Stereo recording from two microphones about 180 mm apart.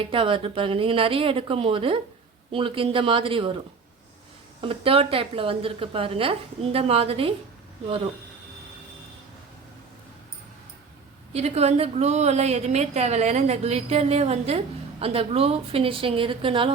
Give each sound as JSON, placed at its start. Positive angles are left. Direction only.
{"t": 0.0, "sound": "a woman's voice", "side_deg": -30}
{"t": 4.6, "sound": "a woman's voice", "side_deg": -30}
{"t": 11.3, "sound": "a woman's voice", "side_deg": -35}